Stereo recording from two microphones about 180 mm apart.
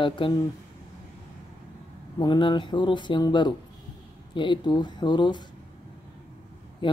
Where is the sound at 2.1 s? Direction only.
25° left (ahead or behind).